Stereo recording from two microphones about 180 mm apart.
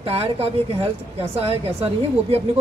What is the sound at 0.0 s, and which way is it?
A woman's voice, 35° right (ahead or behind).